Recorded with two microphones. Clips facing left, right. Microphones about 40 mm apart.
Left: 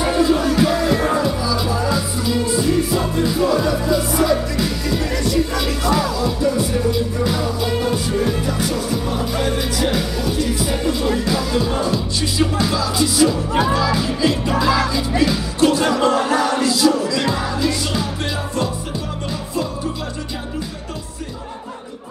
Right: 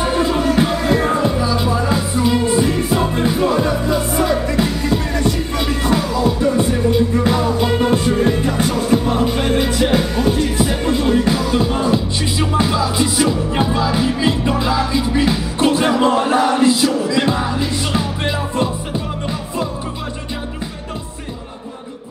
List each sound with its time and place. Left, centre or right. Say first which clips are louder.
0.0 s music: even; right